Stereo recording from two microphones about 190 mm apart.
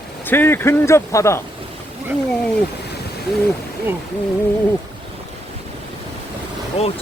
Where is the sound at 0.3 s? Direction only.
10° left (ahead or behind).